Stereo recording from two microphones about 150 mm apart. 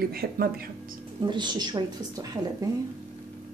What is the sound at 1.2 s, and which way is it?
Speech, 30° right (ahead or behind).